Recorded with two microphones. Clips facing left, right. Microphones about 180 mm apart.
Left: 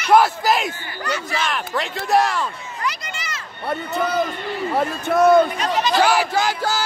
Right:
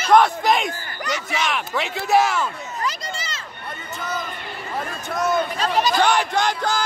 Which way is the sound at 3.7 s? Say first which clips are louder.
Left 8 dB; 65° left (ahead or behind).